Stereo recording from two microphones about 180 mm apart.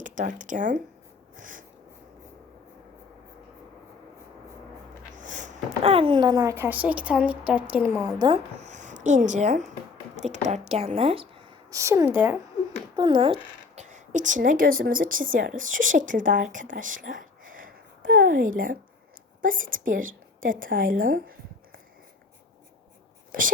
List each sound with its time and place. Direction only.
0.0 s a woman's voice: 45° right (ahead or behind)
5.1 s speech: 45° right (ahead or behind); by 8.4 s 20° right (ahead or behind)
8.5 s speech: 40° right (ahead or behind)
11.7 s speech: 15° right (ahead or behind)
13.0 s a woman's voice: 25° right (ahead or behind); by 21.3 s 50° right (ahead or behind)